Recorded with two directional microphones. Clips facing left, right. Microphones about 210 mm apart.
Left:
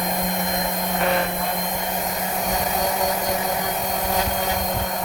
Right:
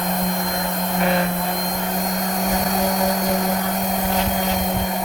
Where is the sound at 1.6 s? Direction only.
5° left (ahead or behind).